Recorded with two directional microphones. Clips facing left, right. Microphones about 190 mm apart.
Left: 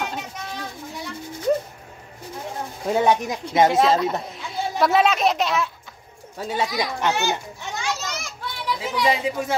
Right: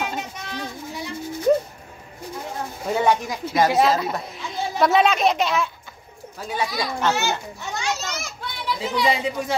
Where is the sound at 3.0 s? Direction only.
20° left (ahead or behind).